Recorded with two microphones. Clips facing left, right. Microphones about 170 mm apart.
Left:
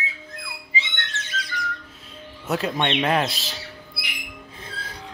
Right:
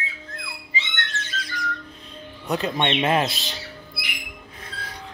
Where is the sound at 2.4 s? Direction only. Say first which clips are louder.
Even; centre (ahead or behind).